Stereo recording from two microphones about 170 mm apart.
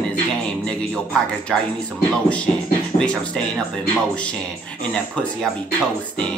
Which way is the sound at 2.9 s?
5° left (ahead or behind).